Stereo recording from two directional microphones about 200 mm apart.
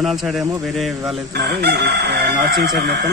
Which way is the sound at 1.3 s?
55° right (ahead or behind).